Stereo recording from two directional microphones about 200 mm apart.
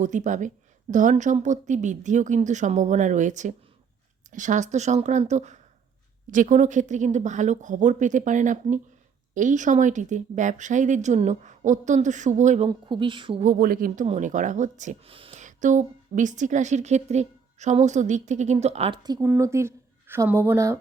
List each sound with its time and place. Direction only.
0.0 s speech: 40° right (ahead or behind)
12.6 s a woman's voice: 25° right (ahead or behind)
13.4 s speech: 45° right (ahead or behind); by 20.7 s 15° right (ahead or behind)